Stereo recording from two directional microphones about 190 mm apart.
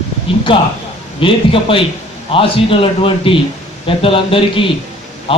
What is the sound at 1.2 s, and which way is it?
A man's voice, 30° left (ahead or behind).